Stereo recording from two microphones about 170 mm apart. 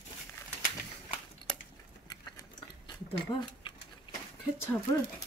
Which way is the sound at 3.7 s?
30° left (ahead or behind).